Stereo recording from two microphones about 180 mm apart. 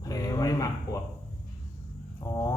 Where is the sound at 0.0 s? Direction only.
20° left (ahead or behind).